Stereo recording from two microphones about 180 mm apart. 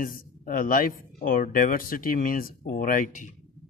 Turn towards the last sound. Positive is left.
turn(degrees=45)  # may be behind; listen again after turning